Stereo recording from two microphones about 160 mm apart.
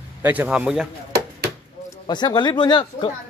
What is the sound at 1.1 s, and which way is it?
Chop, 80° right.